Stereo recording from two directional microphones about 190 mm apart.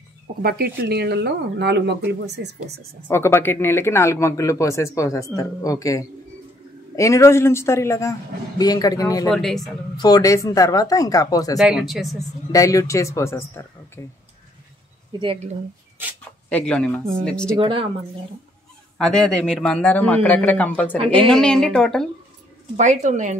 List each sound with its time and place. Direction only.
0.4 s speech: 55° right (ahead or behind)
3.1 s speech: 10° left (ahead or behind)
9.3 s a man's voice: centre (ahead or behind)
10.0 s speech: 20° left (ahead or behind)
11.5 s a man's voice: centre (ahead or behind)
12.5 s speech: 15° left (ahead or behind)
15.1 s speech: 20° right (ahead or behind)
16.4 s a man's voice: 5° left (ahead or behind)
17.6 s speech: 30° right (ahead or behind)
18.9 s a man's voice: 5° left (ahead or behind)
22.8 s speech: 40° right (ahead or behind)